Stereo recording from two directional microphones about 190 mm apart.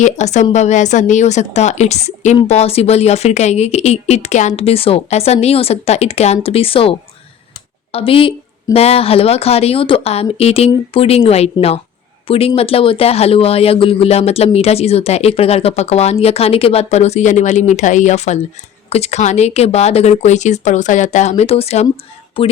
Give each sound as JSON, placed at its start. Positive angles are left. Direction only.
{"t": 0.0, "sound": "a woman's voice", "side_deg": 40}
{"t": 7.9, "sound": "a woman's voice", "side_deg": 30}